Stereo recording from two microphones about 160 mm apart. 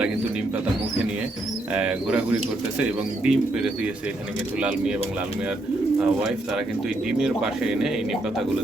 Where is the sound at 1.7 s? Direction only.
5° right (ahead or behind).